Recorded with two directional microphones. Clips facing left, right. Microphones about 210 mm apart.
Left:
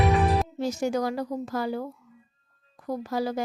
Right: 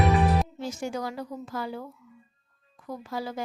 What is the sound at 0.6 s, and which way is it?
A woman's voice, 40° left (ahead or behind).